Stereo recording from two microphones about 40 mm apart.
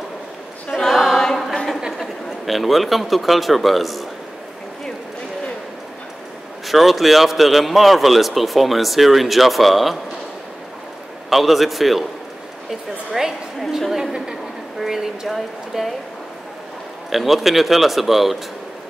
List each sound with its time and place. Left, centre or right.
0.7 s a capella: centre
2.0 s a man's voice: centre
6.7 s a man's voice: centre
11.2 s a man's voice: centre
13.1 s a woman's voice: centre
17.1 s a man's voice: centre